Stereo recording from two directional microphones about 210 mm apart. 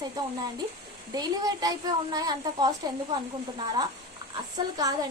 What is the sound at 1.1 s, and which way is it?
A woman's voice, 20° right (ahead or behind).